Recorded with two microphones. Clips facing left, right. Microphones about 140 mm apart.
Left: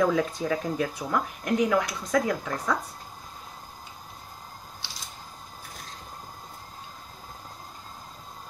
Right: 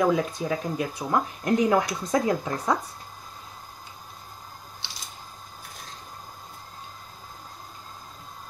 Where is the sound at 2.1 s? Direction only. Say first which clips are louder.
Right 1 dB; 25° right (ahead or behind).